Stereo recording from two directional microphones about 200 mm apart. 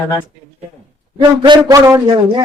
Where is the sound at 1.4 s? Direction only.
20° right (ahead or behind).